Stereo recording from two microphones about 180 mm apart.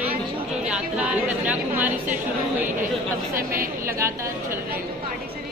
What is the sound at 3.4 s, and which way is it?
Speech, 55° right (ahead or behind).